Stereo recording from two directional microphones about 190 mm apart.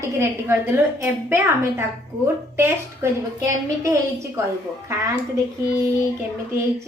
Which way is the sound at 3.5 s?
15° right (ahead or behind).